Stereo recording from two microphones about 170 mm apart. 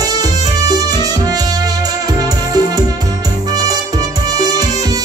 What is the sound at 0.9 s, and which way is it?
Music, 20° right (ahead or behind).